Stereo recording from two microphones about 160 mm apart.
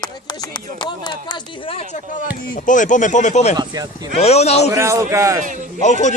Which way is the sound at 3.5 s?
25° right (ahead or behind).